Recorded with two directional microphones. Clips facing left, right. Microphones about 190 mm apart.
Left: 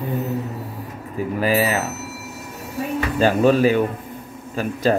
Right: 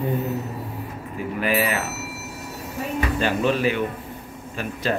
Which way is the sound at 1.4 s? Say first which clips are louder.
Left 3 dB; 35° left (ahead or behind).